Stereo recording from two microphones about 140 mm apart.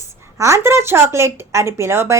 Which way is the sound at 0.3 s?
20° right (ahead or behind).